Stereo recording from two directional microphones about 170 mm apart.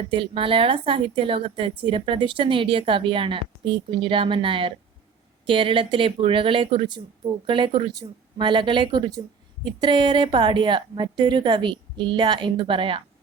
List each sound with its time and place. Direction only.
0.0 s a woman's voice: 30° right (ahead or behind)